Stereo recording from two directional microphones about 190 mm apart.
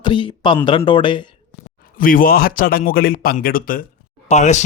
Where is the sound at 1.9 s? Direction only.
50° left (ahead or behind).